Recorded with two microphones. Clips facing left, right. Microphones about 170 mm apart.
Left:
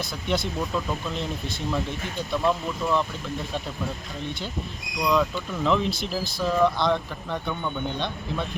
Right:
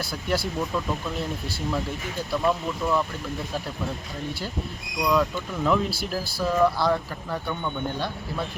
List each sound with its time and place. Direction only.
0.0 s speech: 5° right (ahead or behind)
5.0 s speech: 5° right (ahead or behind)